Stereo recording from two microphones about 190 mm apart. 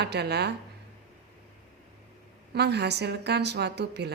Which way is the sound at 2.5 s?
60° right (ahead or behind).